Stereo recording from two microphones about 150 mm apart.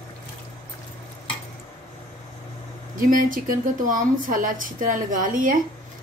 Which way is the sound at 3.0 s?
65° right (ahead or behind).